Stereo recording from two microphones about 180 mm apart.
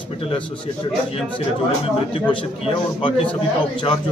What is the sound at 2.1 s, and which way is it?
Speech, 30° left (ahead or behind).